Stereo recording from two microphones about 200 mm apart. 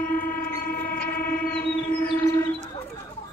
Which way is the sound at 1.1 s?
45° left (ahead or behind).